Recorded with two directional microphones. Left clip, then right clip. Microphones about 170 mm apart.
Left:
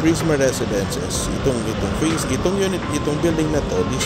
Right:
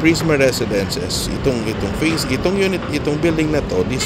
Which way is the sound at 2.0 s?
30° right (ahead or behind).